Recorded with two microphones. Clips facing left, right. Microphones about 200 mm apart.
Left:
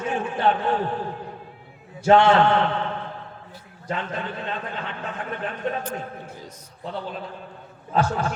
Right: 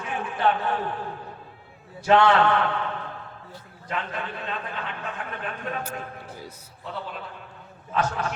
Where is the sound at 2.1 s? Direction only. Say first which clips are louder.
Left 3 dB; 25° left (ahead or behind).